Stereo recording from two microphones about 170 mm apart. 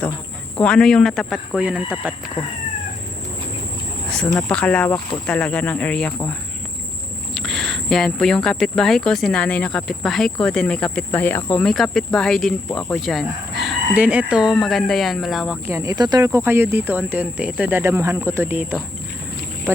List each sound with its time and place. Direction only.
0.6 s speech: 5° left (ahead or behind)
4.1 s speech: 5° left (ahead or behind)
7.3 s speech: centre (ahead or behind)
15.6 s speech: 15° right (ahead or behind)
19.7 s speech: 15° right (ahead or behind)